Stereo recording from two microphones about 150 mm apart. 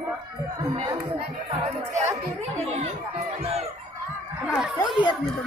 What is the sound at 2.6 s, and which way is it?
Speech, 45° right (ahead or behind).